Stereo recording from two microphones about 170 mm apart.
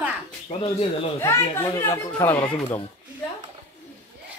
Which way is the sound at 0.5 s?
40° left (ahead or behind).